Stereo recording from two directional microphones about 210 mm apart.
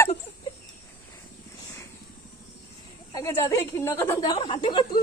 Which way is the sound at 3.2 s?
15° left (ahead or behind).